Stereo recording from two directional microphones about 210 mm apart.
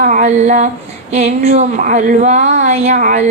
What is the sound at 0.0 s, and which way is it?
Speech, 35° right (ahead or behind).